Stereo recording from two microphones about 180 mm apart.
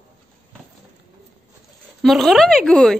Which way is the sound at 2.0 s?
Centre (ahead or behind).